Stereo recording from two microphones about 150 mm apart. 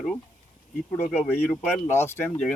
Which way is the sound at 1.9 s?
15° left (ahead or behind).